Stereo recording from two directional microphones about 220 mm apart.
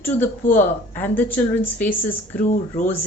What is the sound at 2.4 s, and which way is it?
Speech, 35° left (ahead or behind).